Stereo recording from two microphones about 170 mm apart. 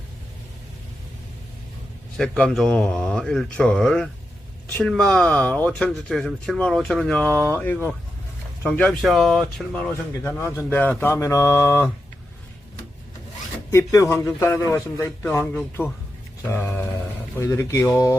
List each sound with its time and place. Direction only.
2.1 s speech: 5° left (ahead or behind)
13.7 s speech: 15° left (ahead or behind)